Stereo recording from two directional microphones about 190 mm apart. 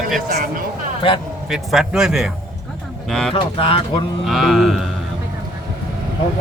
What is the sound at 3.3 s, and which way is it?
Speech, 30° left (ahead or behind).